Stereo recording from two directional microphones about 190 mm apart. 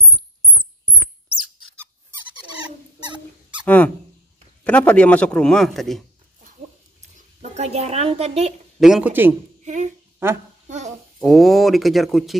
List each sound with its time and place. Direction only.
3.6 s a man's voice: 10° left (ahead or behind)
7.5 s a woman's voice: 35° right (ahead or behind)
8.7 s a man's voice: centre (ahead or behind)
11.1 s a man's voice: centre (ahead or behind)